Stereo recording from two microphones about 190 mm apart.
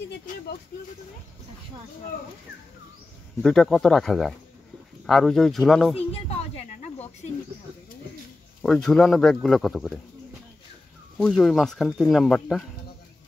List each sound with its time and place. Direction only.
3.4 s speech: centre (ahead or behind)
5.9 s a sound: 30° left (ahead or behind)
8.6 s speech: 5° left (ahead or behind)
11.1 s speech: 5° left (ahead or behind)